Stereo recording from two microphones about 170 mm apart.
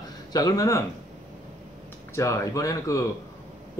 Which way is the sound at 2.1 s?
20° left (ahead or behind).